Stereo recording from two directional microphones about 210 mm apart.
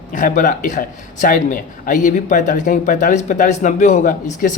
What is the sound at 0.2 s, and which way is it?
Speech, 40° left (ahead or behind).